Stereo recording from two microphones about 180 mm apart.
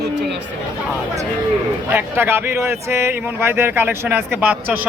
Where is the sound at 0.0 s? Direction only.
70° right (ahead or behind).